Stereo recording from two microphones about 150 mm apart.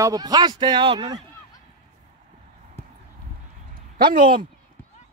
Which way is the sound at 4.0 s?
75° right (ahead or behind).